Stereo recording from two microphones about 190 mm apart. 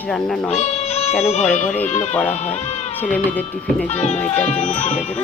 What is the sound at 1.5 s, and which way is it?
Speech, 40° left (ahead or behind).